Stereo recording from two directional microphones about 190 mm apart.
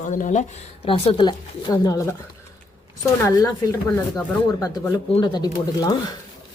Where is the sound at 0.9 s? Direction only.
30° left (ahead or behind).